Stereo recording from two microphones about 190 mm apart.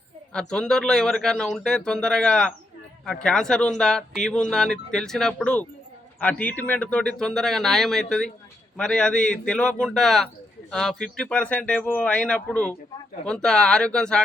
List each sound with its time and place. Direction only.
0.3 s speech: 5° left (ahead or behind)